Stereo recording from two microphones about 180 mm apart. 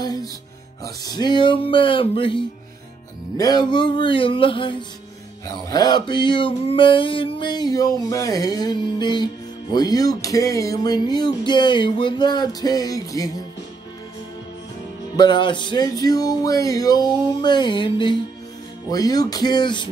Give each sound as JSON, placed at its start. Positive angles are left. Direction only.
{"t": 0.0, "sound": "music", "side_deg": 20}
{"t": 15.1, "sound": "music", "side_deg": 25}